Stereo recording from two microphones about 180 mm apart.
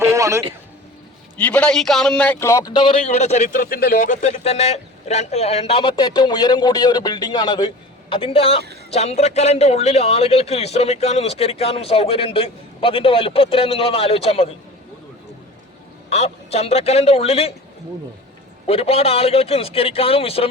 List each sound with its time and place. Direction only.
0.0 s a sound: 15° right (ahead or behind)
1.4 s a man's voice: 5° left (ahead or behind); by 14.5 s 35° left (ahead or behind)
16.0 s a man's voice: 35° left (ahead or behind)
18.6 s a man's voice: 35° left (ahead or behind)